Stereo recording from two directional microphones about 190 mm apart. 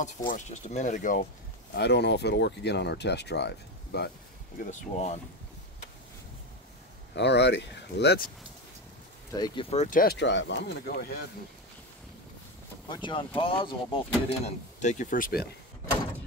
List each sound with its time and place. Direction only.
0.3 s speech: 40° left (ahead or behind)
1.8 s speech: 60° left (ahead or behind)
4.6 s speech: 35° left (ahead or behind)
7.2 s speech: 65° left (ahead or behind)
9.3 s speech: 20° left (ahead or behind)
9.7 s speech: 40° left (ahead or behind)
10.1 s speech: 70° left (ahead or behind); by 11.1 s 55° left (ahead or behind)
12.8 s speech: 25° left (ahead or behind); by 15.4 s 45° left (ahead or behind)